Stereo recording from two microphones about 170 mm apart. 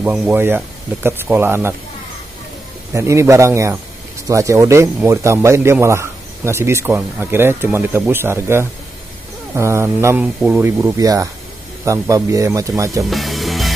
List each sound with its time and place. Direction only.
0.0 s speech: 5° right (ahead or behind)
0.3 s speech: 15° right (ahead or behind)
2.9 s speech: 15° right (ahead or behind)
13.0 s music: centre (ahead or behind)